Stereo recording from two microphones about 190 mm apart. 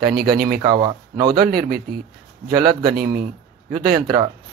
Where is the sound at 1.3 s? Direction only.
55° right (ahead or behind).